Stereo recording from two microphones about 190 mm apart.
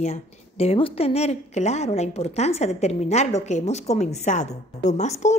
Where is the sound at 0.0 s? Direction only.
35° left (ahead or behind).